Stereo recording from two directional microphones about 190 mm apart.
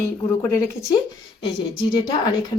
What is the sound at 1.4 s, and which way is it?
Speech, 25° left (ahead or behind).